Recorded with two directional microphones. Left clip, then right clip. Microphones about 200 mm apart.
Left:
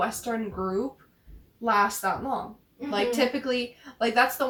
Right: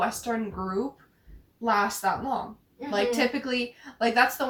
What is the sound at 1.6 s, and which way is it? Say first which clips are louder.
Speech: left 1 dB; 5° right (ahead or behind).